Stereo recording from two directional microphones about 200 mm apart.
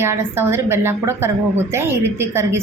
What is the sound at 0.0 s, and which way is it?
A woman's voice, 10° right (ahead or behind).